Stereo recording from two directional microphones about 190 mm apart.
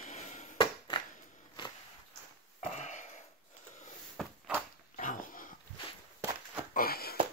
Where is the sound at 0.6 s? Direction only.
25° left (ahead or behind).